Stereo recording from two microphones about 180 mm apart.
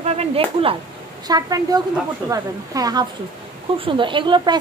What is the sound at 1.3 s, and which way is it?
A woman's voice, 20° right (ahead or behind).